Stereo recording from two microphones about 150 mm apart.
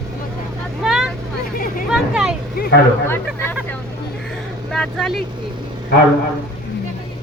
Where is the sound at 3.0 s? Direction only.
15° left (ahead or behind).